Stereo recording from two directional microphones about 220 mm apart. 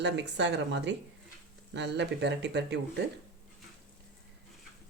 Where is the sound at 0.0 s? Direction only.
50° right (ahead or behind).